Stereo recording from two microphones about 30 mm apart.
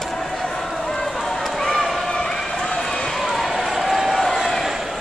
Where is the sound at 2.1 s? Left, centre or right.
Centre.